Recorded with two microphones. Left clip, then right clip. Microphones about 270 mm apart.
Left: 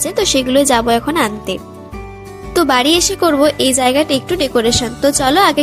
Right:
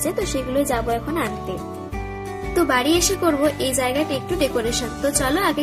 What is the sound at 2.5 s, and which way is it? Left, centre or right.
Speech, left.